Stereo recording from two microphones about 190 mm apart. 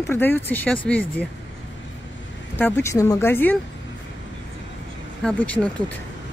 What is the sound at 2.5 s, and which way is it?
Speech, 10° left (ahead or behind).